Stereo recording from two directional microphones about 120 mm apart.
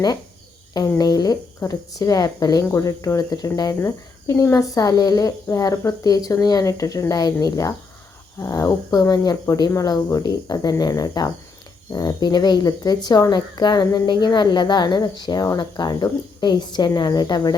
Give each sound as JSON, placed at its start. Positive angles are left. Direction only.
{"t": 0.7, "sound": "speech", "side_deg": 35}